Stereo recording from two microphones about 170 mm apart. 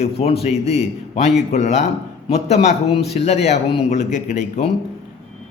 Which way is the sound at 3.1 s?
40° left (ahead or behind).